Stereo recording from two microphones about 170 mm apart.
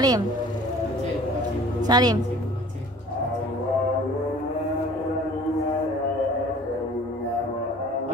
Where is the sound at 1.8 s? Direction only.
25° right (ahead or behind).